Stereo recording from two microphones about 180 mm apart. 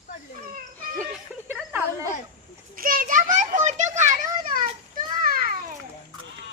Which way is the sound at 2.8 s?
50° right (ahead or behind).